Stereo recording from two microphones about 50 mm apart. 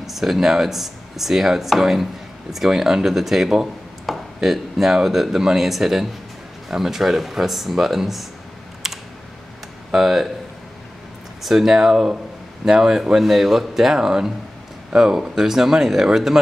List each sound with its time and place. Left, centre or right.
0.0 s speech: centre
8.8 s typing: centre
9.9 s speech: centre
11.4 s speech: centre